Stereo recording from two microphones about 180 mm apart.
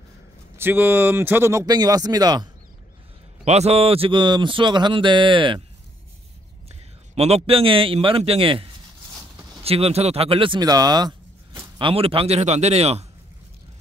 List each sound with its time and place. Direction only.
0.6 s speech: 10° right (ahead or behind)
3.4 s speech: 35° right (ahead or behind)
7.2 s a man's voice: 35° right (ahead or behind)